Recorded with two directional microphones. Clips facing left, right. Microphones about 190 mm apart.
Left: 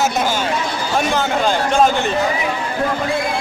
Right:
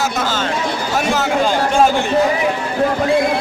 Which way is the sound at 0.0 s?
20° left (ahead or behind).